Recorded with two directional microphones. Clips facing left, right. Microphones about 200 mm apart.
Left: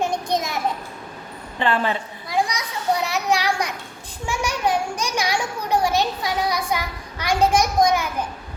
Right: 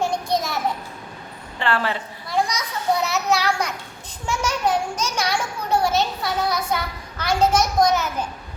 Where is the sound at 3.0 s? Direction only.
15° left (ahead or behind).